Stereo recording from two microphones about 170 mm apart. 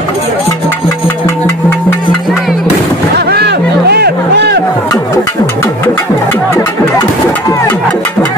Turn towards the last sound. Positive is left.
turn(degrees=20)  # may be behind; listen again after turning